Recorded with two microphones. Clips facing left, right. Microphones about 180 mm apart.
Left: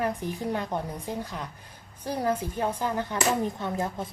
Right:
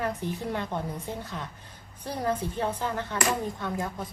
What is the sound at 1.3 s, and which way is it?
A woman's voice, 15° left (ahead or behind).